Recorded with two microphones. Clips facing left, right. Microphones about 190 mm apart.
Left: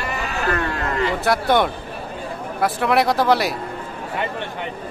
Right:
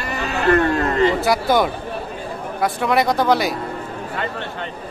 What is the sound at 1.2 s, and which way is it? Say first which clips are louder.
Speech: right 1 dB; centre (ahead or behind).